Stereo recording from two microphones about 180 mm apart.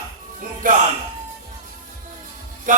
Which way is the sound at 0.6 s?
50° right (ahead or behind).